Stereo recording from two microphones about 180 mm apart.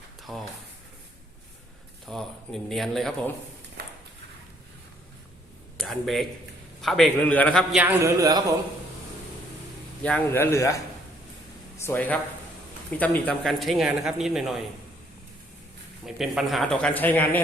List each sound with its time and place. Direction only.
0.2 s a sound: centre (ahead or behind)
2.0 s speech: centre (ahead or behind)
5.7 s speech: centre (ahead or behind)
7.7 s a man's voice: 10° right (ahead or behind)
10.0 s speech: 5° left (ahead or behind)
11.8 s speech: 10° left (ahead or behind)
16.0 s speech: centre (ahead or behind)